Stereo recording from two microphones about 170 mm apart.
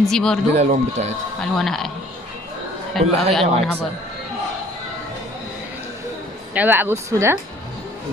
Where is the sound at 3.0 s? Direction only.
Centre (ahead or behind).